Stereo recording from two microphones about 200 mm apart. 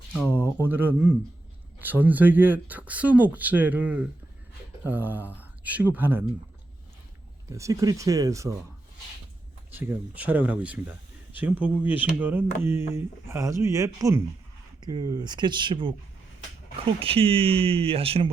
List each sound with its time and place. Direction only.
0.6 s speech: 10° right (ahead or behind)
7.5 s speech: 15° right (ahead or behind)
9.7 s speech: 10° right (ahead or behind)
17.0 s speech: 30° right (ahead or behind)